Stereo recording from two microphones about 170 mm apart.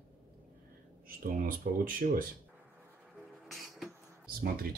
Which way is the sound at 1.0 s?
55° right (ahead or behind).